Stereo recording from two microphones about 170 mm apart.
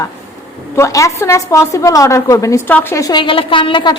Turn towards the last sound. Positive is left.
turn(degrees=30)  # may be behind; listen again after turning